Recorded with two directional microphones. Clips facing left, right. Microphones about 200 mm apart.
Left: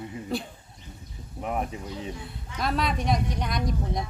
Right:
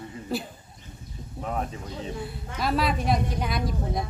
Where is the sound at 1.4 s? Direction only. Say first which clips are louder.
Left 1 dB; 15° left (ahead or behind).